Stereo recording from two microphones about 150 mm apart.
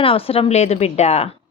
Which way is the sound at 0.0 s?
40° left (ahead or behind).